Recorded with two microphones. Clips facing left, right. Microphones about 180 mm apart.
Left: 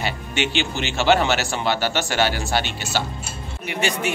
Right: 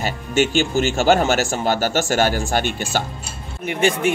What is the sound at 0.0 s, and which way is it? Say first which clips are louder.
A man's voice: right 5 dB; 45° right (ahead or behind).